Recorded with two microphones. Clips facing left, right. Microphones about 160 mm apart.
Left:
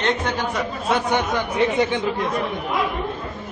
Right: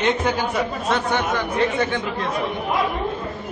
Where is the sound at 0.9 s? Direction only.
15° left (ahead or behind).